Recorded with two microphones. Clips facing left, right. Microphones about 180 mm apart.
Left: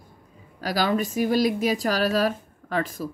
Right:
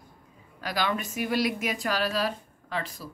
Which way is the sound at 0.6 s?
35° left (ahead or behind).